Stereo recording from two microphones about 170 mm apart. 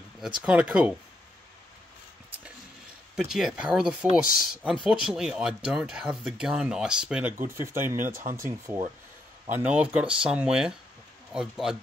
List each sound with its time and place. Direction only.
0.4 s speech: 5° right (ahead or behind)
3.2 s speech: centre (ahead or behind)